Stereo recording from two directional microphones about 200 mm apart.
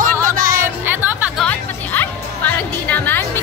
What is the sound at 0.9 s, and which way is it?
Music, 10° right (ahead or behind).